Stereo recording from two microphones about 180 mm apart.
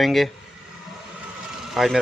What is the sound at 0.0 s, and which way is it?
Speech, centre (ahead or behind).